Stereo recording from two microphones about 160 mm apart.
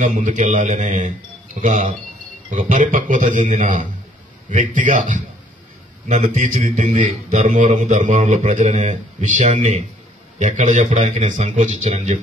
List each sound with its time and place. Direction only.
0.0 s a man's voice: 50° right (ahead or behind)